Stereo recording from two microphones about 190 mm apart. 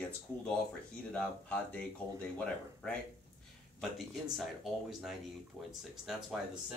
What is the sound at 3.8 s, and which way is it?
Speech, centre (ahead or behind).